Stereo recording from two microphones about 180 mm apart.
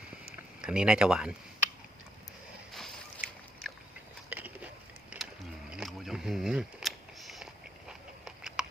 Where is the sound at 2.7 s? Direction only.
Centre (ahead or behind).